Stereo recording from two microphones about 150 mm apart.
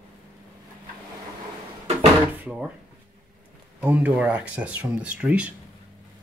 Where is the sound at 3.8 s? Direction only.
10° right (ahead or behind).